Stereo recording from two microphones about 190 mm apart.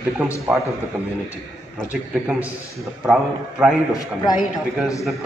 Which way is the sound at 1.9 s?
10° right (ahead or behind).